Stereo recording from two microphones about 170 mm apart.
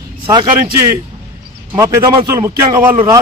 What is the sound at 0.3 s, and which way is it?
A man's voice, 25° right (ahead or behind).